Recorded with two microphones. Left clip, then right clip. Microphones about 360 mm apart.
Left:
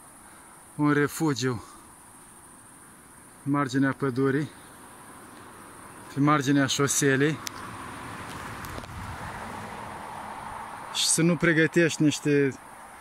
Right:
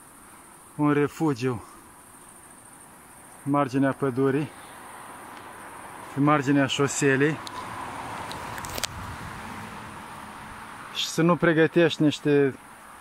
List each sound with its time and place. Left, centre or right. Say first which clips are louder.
0.7 s speech: right 1 dB; centre
3.5 s speech: right 3 dB; centre
6.2 s speech: right 1 dB; centre
8.8 s a sound: right 10 dB; right
10.9 s speech: right 2 dB; centre